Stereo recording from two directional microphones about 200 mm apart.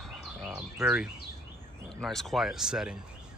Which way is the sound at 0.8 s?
5° right (ahead or behind).